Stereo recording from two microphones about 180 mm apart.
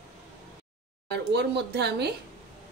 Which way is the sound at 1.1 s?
65° right (ahead or behind).